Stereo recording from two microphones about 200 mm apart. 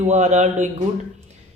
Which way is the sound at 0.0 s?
35° right (ahead or behind).